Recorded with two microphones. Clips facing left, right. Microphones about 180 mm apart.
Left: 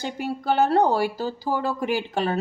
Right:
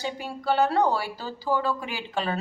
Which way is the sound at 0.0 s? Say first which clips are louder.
Left 3 dB; 50° left (ahead or behind).